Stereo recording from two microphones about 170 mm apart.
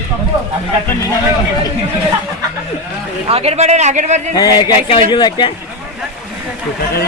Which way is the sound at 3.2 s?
35° right (ahead or behind).